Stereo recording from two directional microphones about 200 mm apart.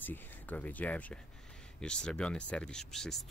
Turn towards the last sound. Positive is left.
turn(degrees=0)  # may be behind; listen again after turning